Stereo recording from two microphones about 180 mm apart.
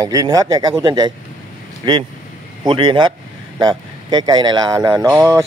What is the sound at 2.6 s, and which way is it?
Speech, 25° right (ahead or behind).